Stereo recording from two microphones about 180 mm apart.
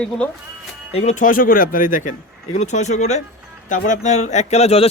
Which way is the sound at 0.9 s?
40° left (ahead or behind).